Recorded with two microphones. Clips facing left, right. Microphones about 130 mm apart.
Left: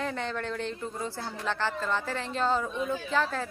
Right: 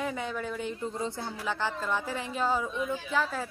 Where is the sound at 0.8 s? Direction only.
20° right (ahead or behind).